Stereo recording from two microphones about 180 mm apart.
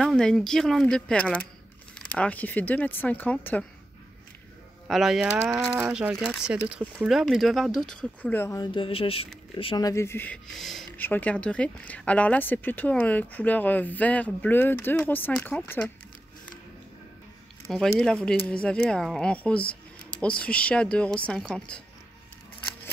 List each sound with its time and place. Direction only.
0.0 s speech: 5° left (ahead or behind)
4.8 s speech: centre (ahead or behind)
8.7 s speech: 30° left (ahead or behind); by 10.9 s centre (ahead or behind)
10.9 s speech: 10° left (ahead or behind)
17.6 s speech: centre (ahead or behind)